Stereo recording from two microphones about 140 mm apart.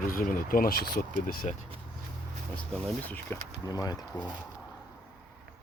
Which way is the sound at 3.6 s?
25° left (ahead or behind).